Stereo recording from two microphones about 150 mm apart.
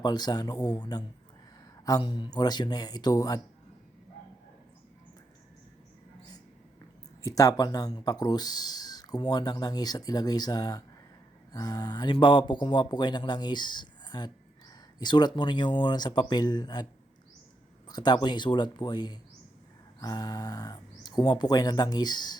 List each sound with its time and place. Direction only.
0.0 s speech: 25° left (ahead or behind)
7.2 s speech: 20° left (ahead or behind)
17.8 s speech: 25° left (ahead or behind)